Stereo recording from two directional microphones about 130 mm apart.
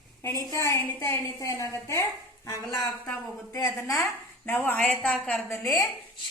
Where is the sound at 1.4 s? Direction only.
25° left (ahead or behind).